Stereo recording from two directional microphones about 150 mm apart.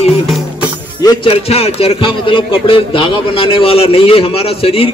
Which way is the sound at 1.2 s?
40° left (ahead or behind).